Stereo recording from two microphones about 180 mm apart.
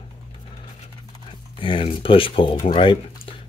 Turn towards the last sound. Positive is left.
turn(degrees=30)  # may be behind; listen again after turning